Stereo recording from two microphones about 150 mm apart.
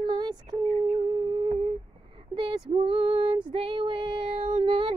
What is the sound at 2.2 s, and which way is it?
Female singing, 30° right (ahead or behind).